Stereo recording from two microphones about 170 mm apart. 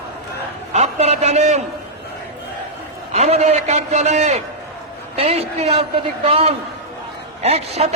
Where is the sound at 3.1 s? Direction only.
40° right (ahead or behind).